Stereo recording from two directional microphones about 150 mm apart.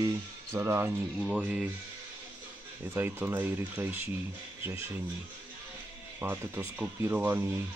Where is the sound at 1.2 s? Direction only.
5° right (ahead or behind).